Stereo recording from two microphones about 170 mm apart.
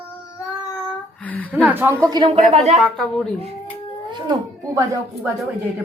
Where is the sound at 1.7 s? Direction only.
15° right (ahead or behind); by 2.6 s 35° right (ahead or behind).